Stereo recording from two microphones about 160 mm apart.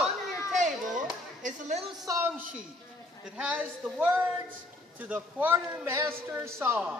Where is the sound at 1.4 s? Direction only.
50° right (ahead or behind).